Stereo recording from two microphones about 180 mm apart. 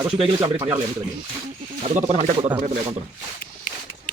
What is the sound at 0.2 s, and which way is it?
Speech, 10° right (ahead or behind).